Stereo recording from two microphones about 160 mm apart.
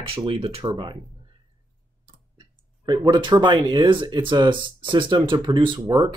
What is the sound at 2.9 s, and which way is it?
Speech, 30° right (ahead or behind).